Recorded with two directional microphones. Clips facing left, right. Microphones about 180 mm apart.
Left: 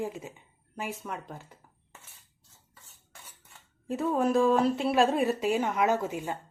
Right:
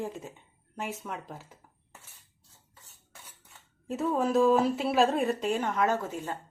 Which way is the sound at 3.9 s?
Centre (ahead or behind).